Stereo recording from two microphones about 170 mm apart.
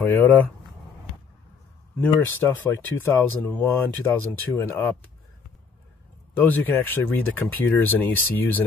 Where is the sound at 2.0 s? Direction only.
10° left (ahead or behind).